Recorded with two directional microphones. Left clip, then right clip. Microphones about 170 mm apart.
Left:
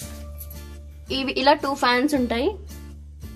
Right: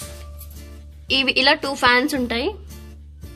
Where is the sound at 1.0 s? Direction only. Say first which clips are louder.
Right 3 dB; 5° left (ahead or behind).